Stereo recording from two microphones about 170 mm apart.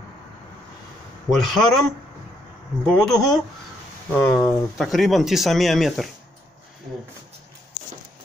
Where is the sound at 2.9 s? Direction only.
5° left (ahead or behind).